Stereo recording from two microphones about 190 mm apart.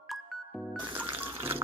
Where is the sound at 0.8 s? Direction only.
10° right (ahead or behind).